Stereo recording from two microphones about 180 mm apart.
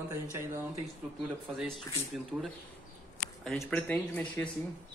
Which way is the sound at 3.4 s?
5° left (ahead or behind).